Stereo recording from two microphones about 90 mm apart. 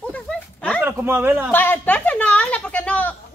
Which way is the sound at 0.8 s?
20° right (ahead or behind).